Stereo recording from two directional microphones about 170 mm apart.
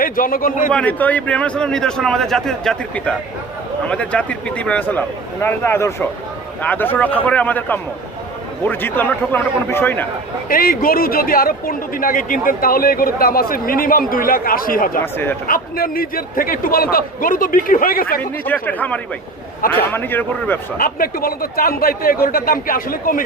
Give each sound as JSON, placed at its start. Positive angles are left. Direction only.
{"t": 0.0, "sound": "speech", "side_deg": 55}
{"t": 0.7, "sound": "a man's voice", "side_deg": 10}
{"t": 10.5, "sound": "speech", "side_deg": 55}
{"t": 15.0, "sound": "a man's voice", "side_deg": 10}
{"t": 15.4, "sound": "speech", "side_deg": 60}
{"t": 18.2, "sound": "a man's voice", "side_deg": 10}
{"t": 20.7, "sound": "speech", "side_deg": 60}